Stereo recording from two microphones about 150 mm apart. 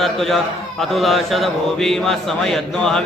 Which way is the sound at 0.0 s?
Centre (ahead or behind).